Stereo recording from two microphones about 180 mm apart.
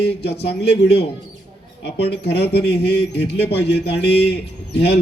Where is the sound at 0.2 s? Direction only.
65° left (ahead or behind).